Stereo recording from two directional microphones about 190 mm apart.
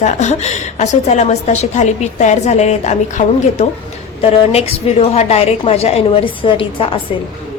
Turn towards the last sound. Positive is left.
turn(degrees=25)  # may be behind; listen again after turning